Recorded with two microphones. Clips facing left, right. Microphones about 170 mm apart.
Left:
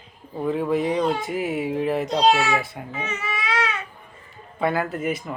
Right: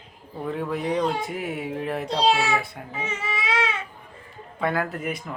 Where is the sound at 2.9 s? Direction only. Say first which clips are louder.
Even; 30° right (ahead or behind).